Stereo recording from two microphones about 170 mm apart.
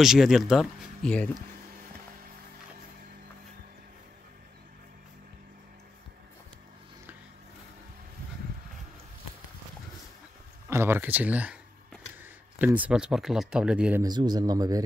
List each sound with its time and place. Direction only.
0.0 s speech: 5° right (ahead or behind)
10.7 s speech: 15° right (ahead or behind)
14.0 s speech: 25° right (ahead or behind)